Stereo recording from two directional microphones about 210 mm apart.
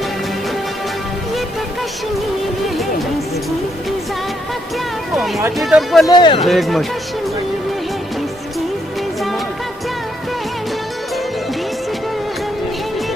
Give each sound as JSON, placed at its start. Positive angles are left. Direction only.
{"t": 5.6, "sound": "speech", "side_deg": 0}
{"t": 6.0, "sound": "speech", "side_deg": 20}
{"t": 6.4, "sound": "speech", "side_deg": 0}